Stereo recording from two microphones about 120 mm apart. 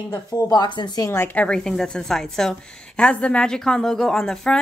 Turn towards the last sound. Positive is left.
turn(degrees=5)  # may be behind; listen again after turning